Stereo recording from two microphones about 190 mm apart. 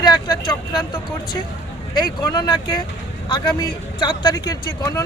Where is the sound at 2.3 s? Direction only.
20° left (ahead or behind).